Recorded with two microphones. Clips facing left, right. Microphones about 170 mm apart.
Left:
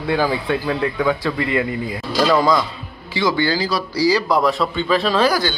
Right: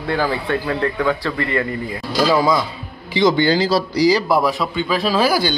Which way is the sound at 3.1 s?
20° right (ahead or behind).